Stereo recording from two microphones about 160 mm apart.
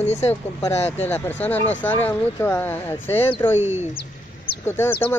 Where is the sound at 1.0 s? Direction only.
10° left (ahead or behind).